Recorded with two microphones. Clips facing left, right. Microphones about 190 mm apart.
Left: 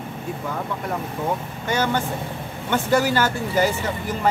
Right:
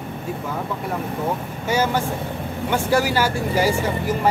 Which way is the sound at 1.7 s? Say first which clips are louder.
Right 2 dB; 10° right (ahead or behind).